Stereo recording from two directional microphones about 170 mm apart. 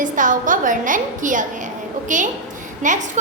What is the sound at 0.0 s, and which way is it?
A woman's voice, 50° right (ahead or behind).